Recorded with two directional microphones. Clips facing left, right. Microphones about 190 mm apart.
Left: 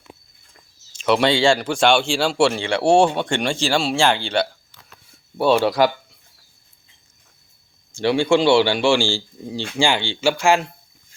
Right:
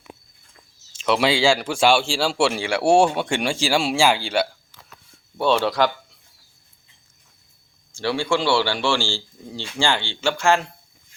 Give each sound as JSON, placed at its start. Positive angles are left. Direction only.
{"t": 0.9, "sound": "speech", "side_deg": 0}
{"t": 5.4, "sound": "speech", "side_deg": 10}
{"t": 7.9, "sound": "speech", "side_deg": 20}